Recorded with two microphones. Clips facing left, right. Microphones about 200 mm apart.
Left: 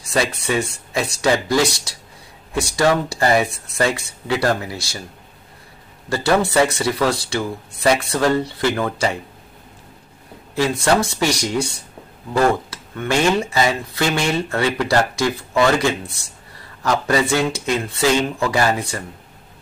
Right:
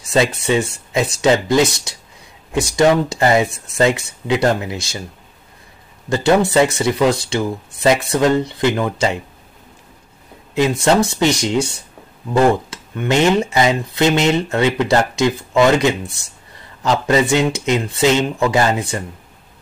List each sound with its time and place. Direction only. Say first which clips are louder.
0.1 s speech: right 4 dB; 25° right (ahead or behind)
6.0 s speech: right 3 dB; 20° right (ahead or behind)
10.5 s speech: right 3 dB; 20° right (ahead or behind)